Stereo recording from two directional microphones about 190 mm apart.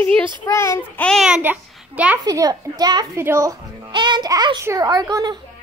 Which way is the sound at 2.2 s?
20° right (ahead or behind).